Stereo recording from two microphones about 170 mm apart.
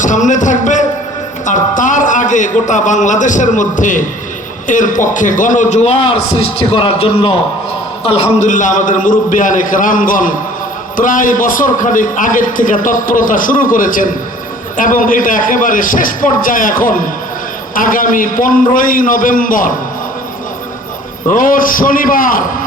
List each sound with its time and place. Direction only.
0.0 s a sound: 45° left (ahead or behind)
1.5 s a man's voice: 50° left (ahead or behind)
21.2 s a man's voice: 55° left (ahead or behind)